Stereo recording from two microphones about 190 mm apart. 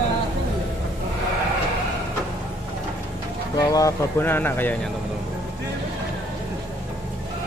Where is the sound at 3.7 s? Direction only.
15° left (ahead or behind).